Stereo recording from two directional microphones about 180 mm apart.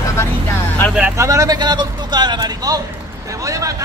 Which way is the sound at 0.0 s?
15° left (ahead or behind).